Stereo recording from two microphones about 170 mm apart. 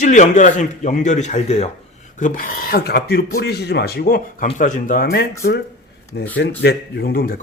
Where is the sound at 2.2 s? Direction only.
55° left (ahead or behind).